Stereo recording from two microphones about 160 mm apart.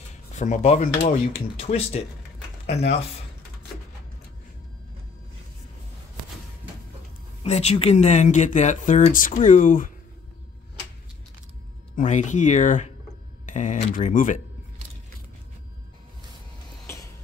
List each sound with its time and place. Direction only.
0.4 s speech: 45° left (ahead or behind)
7.4 s speech: 40° left (ahead or behind)
11.9 s speech: 50° left (ahead or behind)